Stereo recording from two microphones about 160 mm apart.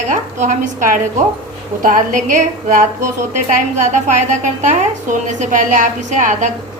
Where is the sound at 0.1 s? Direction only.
50° right (ahead or behind).